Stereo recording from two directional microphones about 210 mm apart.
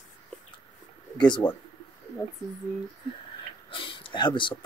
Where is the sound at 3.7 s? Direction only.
25° left (ahead or behind).